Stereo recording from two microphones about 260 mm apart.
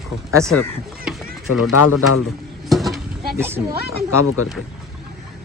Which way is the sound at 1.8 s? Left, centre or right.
Left.